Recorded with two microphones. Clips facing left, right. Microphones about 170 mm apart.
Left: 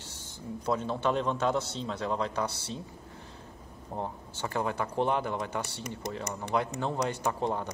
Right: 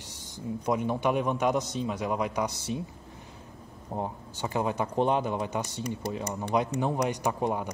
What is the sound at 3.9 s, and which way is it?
Speech, 15° right (ahead or behind).